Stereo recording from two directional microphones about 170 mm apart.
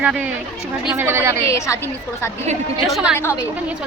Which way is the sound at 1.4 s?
15° left (ahead or behind).